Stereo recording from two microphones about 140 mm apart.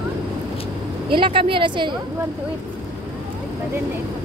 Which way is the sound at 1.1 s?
40° right (ahead or behind).